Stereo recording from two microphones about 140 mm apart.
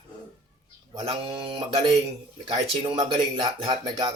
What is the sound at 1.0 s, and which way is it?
Speech, 40° right (ahead or behind).